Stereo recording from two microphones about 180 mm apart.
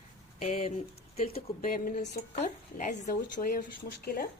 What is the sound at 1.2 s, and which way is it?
Speech, 55° left (ahead or behind).